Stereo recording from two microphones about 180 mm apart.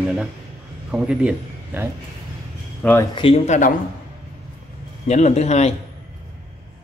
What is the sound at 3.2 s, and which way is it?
Speech, 30° left (ahead or behind).